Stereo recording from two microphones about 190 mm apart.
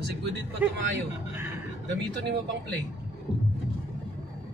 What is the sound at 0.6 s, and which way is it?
Speech, 10° right (ahead or behind).